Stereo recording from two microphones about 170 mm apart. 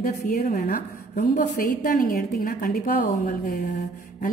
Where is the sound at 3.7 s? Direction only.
40° left (ahead or behind).